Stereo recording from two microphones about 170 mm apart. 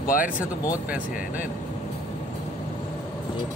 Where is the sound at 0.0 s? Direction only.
55° left (ahead or behind).